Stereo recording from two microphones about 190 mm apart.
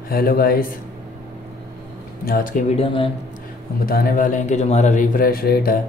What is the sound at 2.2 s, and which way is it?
Speech, 45° left (ahead or behind).